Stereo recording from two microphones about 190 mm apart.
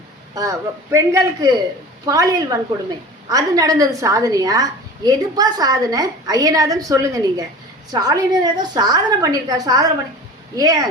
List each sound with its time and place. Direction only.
0.3 s a man's voice: 15° right (ahead or behind)